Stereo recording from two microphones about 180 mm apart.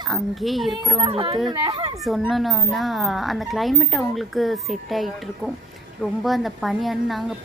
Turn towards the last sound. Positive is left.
turn(degrees=0)  # may be behind; listen again after turning